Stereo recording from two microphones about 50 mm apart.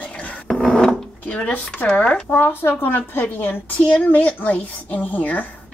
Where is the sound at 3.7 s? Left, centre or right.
Centre.